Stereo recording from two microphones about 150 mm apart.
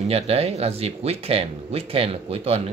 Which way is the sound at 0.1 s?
40° right (ahead or behind).